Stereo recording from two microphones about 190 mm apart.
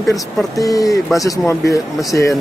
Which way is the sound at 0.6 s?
20° left (ahead or behind).